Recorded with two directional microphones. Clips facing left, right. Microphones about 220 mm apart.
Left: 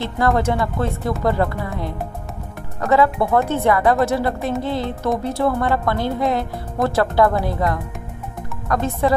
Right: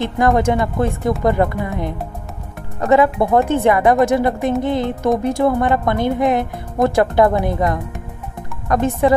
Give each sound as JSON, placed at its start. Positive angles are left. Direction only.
{"t": 0.0, "sound": "speech", "side_deg": -15}